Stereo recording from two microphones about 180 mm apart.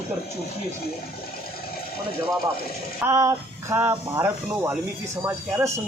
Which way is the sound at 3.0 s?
15° right (ahead or behind).